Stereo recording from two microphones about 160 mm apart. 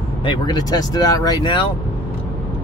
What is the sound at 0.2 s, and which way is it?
Speech, 30° left (ahead or behind).